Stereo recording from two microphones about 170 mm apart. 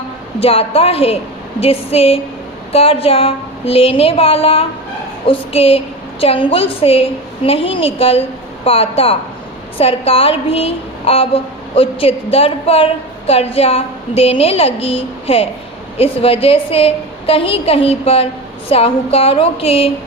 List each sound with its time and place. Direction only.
0.3 s a woman's voice: 35° left (ahead or behind)